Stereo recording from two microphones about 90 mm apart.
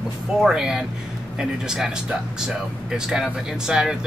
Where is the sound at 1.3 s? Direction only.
5° right (ahead or behind).